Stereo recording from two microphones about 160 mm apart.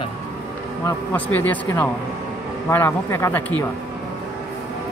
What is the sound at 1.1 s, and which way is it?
Speech, 10° left (ahead or behind).